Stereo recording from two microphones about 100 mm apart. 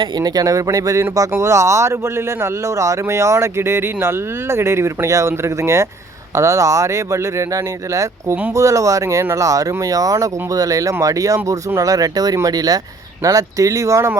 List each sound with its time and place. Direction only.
0.2 s speech: 40° right (ahead or behind)